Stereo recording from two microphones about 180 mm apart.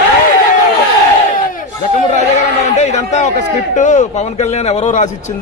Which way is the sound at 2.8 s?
40° left (ahead or behind).